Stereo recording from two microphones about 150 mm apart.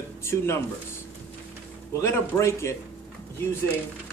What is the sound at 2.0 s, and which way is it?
Speech, 20° left (ahead or behind).